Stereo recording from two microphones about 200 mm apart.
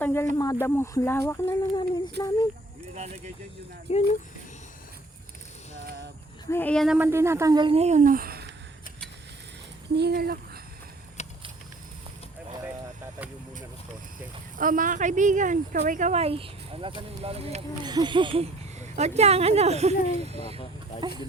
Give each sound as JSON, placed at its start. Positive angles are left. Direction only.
{"t": 0.0, "sound": "a sound", "side_deg": 10}
{"t": 0.3, "sound": "speech", "side_deg": 15}
{"t": 2.9, "sound": "speech", "side_deg": -35}
{"t": 3.9, "sound": "speech", "side_deg": 30}
{"t": 6.5, "sound": "speech", "side_deg": 10}
{"t": 9.9, "sound": "speech", "side_deg": -55}
{"t": 11.2, "sound": "vehicle", "side_deg": 35}
{"t": 14.6, "sound": "speech", "side_deg": -40}